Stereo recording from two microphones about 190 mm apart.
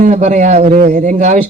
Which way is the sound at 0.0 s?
40° right (ahead or behind).